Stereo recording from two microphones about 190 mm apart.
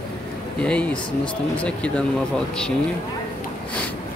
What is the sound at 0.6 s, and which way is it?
Speech, 5° left (ahead or behind).